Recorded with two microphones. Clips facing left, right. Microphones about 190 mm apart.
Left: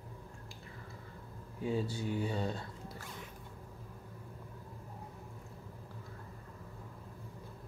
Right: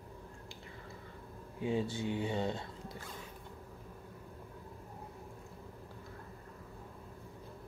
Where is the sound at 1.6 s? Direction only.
25° right (ahead or behind).